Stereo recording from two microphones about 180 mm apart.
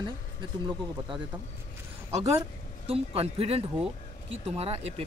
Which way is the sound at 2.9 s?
35° right (ahead or behind).